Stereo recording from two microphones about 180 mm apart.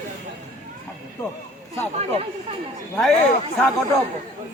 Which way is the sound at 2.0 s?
35° right (ahead or behind).